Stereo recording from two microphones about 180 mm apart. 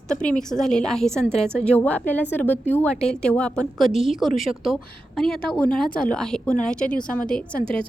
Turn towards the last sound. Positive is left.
turn(degrees=5)  # may be behind; listen again after turning